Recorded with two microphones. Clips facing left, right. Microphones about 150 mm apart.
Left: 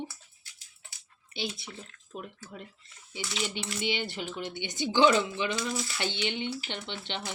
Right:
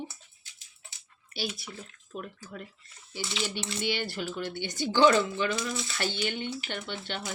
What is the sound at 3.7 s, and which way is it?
Speech, 20° left (ahead or behind).